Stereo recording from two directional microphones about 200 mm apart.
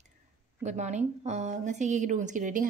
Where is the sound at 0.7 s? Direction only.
35° right (ahead or behind).